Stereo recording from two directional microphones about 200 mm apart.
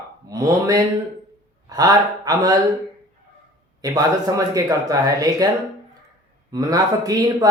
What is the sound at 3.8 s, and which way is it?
Speech, 20° right (ahead or behind).